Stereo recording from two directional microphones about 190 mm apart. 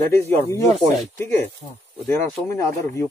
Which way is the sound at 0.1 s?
15° left (ahead or behind).